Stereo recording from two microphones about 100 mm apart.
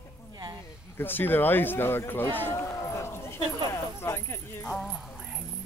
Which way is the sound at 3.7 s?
25° left (ahead or behind).